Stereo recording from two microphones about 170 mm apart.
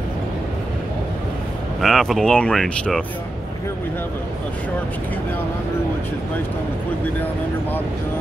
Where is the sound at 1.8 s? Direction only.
Centre (ahead or behind).